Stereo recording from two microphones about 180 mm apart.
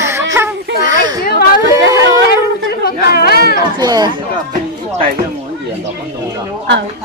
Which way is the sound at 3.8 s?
20° right (ahead or behind).